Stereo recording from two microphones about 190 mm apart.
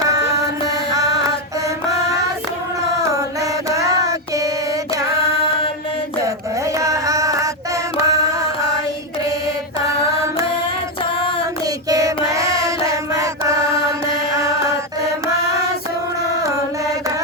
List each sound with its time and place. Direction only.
0.0 s mantra: 20° right (ahead or behind)
0.9 s a sound: 20° right (ahead or behind)
3.7 s a sound: 15° right (ahead or behind)
6.7 s music: 15° right (ahead or behind)
11.9 s child singing: 20° right (ahead or behind)
14.3 s mantra: 15° right (ahead or behind)